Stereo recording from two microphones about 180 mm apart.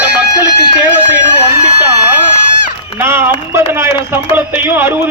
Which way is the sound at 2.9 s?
15° right (ahead or behind).